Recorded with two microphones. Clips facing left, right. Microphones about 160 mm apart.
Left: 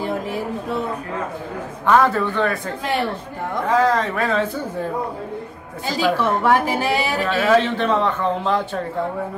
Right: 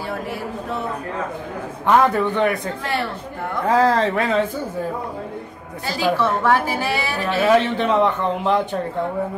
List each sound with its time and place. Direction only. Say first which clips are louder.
1.9 s a man's voice: even; 15° right (ahead or behind)
2.8 s a woman's voice: left 6 dB; 15° left (ahead or behind)
3.6 s speech: right 1 dB; 30° right (ahead or behind)
6.1 s a woman's voice: even; 15° left (ahead or behind)
7.2 s a man's voice: right 2 dB; 15° right (ahead or behind)